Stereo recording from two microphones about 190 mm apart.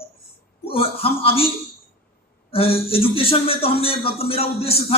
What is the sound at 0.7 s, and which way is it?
Speech, 30° left (ahead or behind).